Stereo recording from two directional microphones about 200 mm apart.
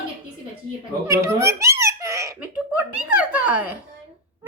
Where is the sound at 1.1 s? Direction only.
15° right (ahead or behind).